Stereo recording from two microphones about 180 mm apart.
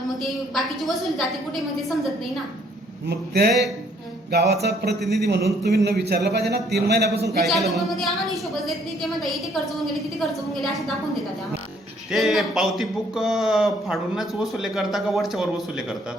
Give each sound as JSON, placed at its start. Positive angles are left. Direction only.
{"t": 0.2, "sound": "speech", "side_deg": 0}
{"t": 3.1, "sound": "speech", "side_deg": -65}
{"t": 7.4, "sound": "speech", "side_deg": 0}
{"t": 12.1, "sound": "speech", "side_deg": 0}